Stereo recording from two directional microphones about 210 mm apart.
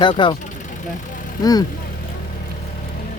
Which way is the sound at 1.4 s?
20° left (ahead or behind).